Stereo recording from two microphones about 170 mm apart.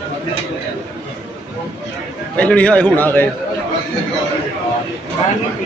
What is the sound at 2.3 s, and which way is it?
Speech, 5° left (ahead or behind).